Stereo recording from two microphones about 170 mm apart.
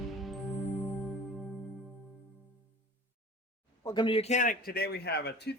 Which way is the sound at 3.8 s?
25° left (ahead or behind).